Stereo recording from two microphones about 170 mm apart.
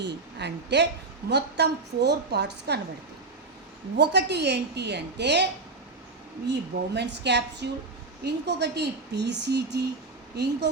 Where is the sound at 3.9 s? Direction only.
85° right.